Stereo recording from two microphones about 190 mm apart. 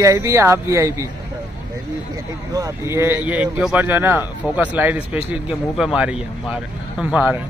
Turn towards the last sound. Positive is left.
turn(degrees=-10)  # may be behind; listen again after turning